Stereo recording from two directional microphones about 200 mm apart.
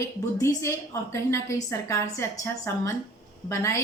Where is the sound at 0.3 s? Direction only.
15° left (ahead or behind).